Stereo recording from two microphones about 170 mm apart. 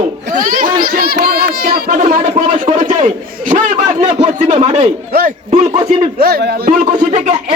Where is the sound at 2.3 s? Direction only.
45° right (ahead or behind).